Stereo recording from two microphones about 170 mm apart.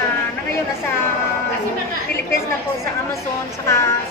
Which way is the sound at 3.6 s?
15° left (ahead or behind).